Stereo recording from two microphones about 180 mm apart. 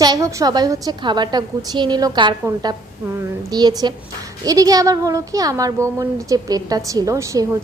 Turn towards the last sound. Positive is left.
turn(degrees=-15)  # may be behind; listen again after turning